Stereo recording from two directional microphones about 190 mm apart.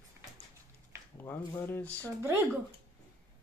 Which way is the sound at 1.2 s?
10° left (ahead or behind).